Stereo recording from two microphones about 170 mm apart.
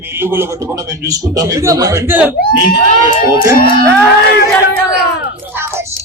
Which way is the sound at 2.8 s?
45° left (ahead or behind).